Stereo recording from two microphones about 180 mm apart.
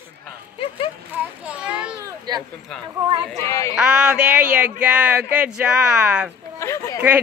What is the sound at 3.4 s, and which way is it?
Speech, 15° left (ahead or behind).